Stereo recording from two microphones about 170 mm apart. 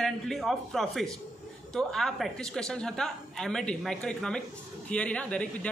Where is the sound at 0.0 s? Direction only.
Centre (ahead or behind).